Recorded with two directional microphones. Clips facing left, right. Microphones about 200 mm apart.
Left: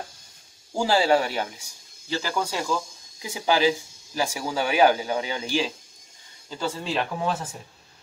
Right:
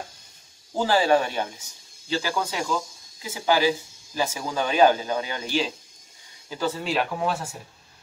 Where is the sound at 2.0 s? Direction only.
15° right (ahead or behind).